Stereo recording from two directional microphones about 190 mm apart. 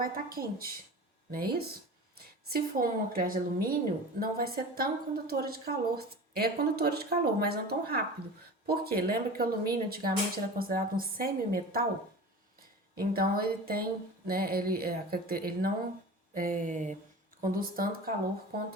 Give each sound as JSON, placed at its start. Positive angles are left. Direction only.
{"t": 0.0, "sound": "a woman's voice", "side_deg": -50}
{"t": 13.0, "sound": "speech", "side_deg": -50}